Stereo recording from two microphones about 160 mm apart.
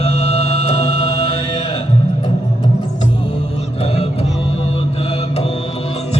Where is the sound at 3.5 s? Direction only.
40° left (ahead or behind).